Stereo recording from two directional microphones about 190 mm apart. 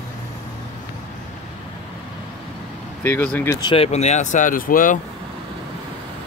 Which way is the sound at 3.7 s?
35° left (ahead or behind).